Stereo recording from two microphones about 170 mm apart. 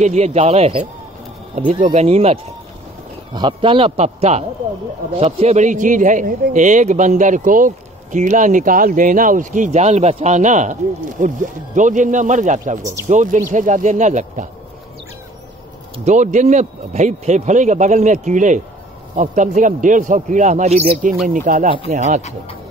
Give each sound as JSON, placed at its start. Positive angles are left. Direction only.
{"t": 0.0, "sound": "a man's voice", "side_deg": -40}
{"t": 16.1, "sound": "a man's voice", "side_deg": -45}